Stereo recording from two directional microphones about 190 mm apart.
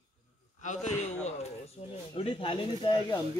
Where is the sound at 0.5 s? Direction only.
40° left (ahead or behind).